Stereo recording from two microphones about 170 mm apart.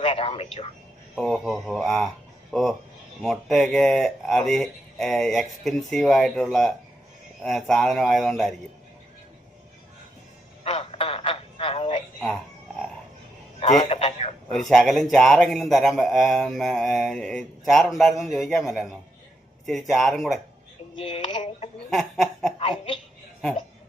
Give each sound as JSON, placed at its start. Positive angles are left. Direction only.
{"t": 0.0, "sound": "a man's voice", "side_deg": 35}
{"t": 1.1, "sound": "a man's voice", "side_deg": 0}
{"t": 10.6, "sound": "frog", "side_deg": 35}
{"t": 13.6, "sound": "telephone", "side_deg": 40}
{"t": 14.5, "sound": "a man's voice", "side_deg": 0}
{"t": 21.0, "sound": "a man's voice", "side_deg": 30}
{"t": 21.8, "sound": "chuckle", "side_deg": 0}
{"t": 22.5, "sound": "speech", "side_deg": 35}